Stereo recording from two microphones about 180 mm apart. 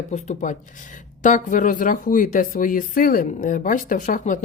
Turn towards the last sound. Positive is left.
turn(degrees=45)  # may be behind; listen again after turning